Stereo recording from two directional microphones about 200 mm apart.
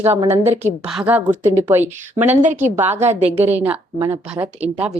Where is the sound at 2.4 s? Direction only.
40° right (ahead or behind).